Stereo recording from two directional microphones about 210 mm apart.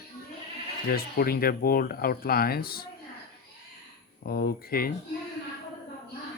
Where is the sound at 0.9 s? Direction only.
45° left (ahead or behind).